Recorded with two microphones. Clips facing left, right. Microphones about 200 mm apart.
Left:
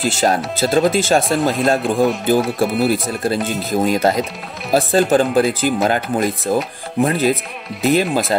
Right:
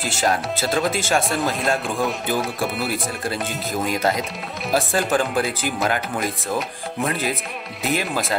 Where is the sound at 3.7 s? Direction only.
35° left (ahead or behind).